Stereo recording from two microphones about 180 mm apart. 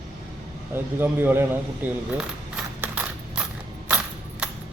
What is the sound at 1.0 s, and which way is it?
Speech, 10° right (ahead or behind).